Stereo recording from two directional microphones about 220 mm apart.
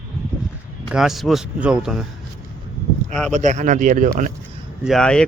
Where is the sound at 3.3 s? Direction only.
35° right (ahead or behind).